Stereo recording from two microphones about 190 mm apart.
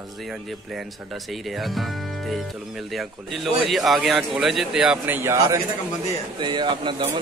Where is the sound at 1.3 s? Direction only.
Centre (ahead or behind).